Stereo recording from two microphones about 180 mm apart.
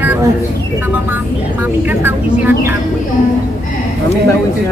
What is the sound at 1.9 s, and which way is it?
Speech, 10° right (ahead or behind).